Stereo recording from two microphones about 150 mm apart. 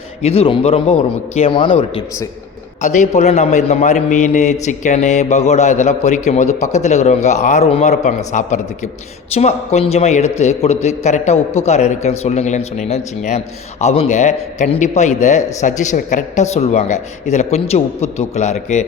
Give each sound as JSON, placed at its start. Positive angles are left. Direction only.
{"t": 0.2, "sound": "a man's voice", "side_deg": 40}
{"t": 2.8, "sound": "speech", "side_deg": 55}